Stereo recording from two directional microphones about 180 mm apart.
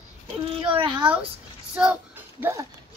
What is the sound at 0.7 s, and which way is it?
Speech, 25° right (ahead or behind).